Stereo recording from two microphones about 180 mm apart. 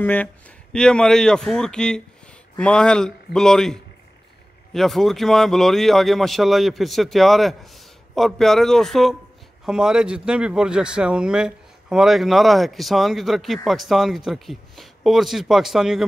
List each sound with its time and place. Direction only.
0.0 s a man's voice: 10° left (ahead or behind)